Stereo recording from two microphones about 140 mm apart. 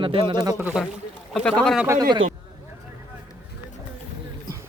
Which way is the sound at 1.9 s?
30° right (ahead or behind).